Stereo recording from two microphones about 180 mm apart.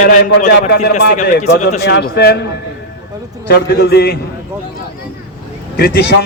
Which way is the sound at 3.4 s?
65° left (ahead or behind).